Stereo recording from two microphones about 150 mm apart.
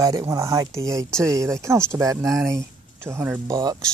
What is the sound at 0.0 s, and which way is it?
Speech, 20° right (ahead or behind).